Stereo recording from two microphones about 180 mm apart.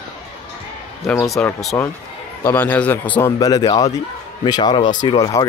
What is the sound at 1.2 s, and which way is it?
Speech, centre (ahead or behind).